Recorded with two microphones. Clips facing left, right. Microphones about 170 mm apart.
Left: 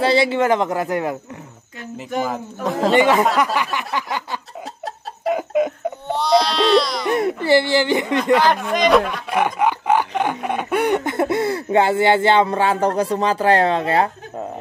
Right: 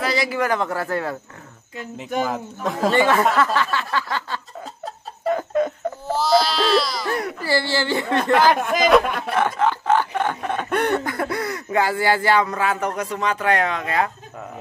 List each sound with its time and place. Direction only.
0.0 s speech: 30° left (ahead or behind)
2.2 s speech: centre (ahead or behind)
2.9 s speech: 20° left (ahead or behind)
3.3 s a sound: 15° left (ahead or behind)
6.0 s baby cry: centre (ahead or behind)
7.1 s music: 25° left (ahead or behind)
7.4 s speech: 20° left (ahead or behind)
8.7 s speech: centre (ahead or behind)
9.3 s a sound: 15° left (ahead or behind)
11.1 s speech: 25° left (ahead or behind)